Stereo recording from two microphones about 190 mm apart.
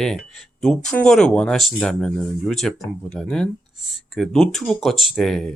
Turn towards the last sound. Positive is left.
turn(degrees=0)  # may be behind; listen again after turning